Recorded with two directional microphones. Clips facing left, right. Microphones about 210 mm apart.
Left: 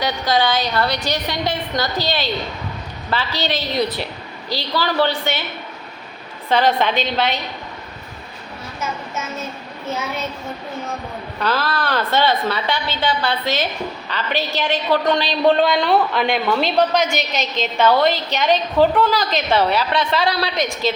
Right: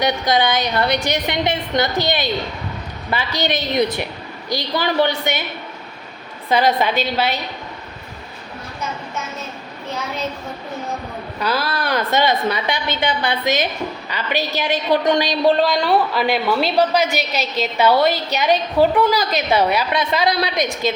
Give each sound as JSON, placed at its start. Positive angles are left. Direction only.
{"t": 0.0, "sound": "a woman's voice", "side_deg": -20}
{"t": 6.5, "sound": "a woman's voice", "side_deg": -10}
{"t": 11.3, "sound": "a woman's voice", "side_deg": -10}
{"t": 15.5, "sound": "a woman's voice", "side_deg": 0}